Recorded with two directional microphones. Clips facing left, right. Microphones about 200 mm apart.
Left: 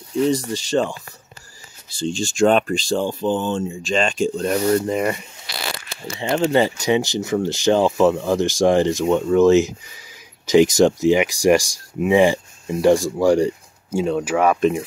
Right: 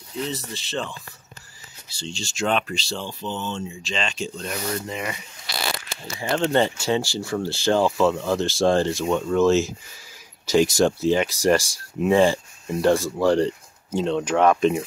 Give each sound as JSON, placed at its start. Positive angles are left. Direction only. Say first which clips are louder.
{"t": 0.5, "sound": "speech", "louder": "left 10 dB", "side_deg": 45}
{"t": 6.3, "sound": "speech", "louder": "left 3 dB", "side_deg": 10}